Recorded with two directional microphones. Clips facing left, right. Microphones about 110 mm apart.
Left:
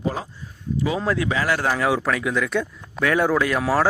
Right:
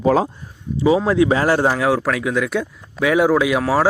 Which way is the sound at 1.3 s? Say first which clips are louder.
Right 6 dB; 35° right (ahead or behind).